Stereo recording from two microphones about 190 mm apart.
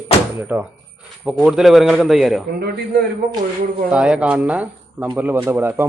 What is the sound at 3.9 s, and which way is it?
A man's voice, 5° right (ahead or behind).